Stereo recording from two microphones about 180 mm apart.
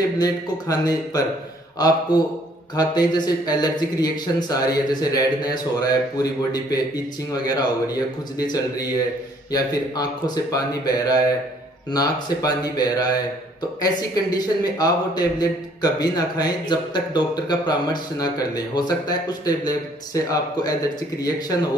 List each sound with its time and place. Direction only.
0.2 s speech: 20° left (ahead or behind)